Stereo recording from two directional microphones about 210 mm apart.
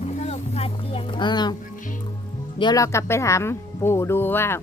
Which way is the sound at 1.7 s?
40° left (ahead or behind).